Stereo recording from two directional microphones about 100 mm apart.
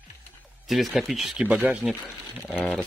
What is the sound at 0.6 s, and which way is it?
Speech, centre (ahead or behind).